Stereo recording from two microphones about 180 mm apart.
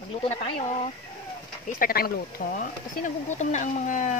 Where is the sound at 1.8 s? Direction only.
55° left (ahead or behind).